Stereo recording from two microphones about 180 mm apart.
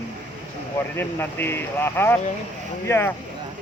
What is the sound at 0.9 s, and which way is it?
Speech, 10° left (ahead or behind).